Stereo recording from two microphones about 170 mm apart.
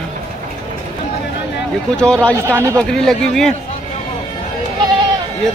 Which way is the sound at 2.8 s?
5° left (ahead or behind).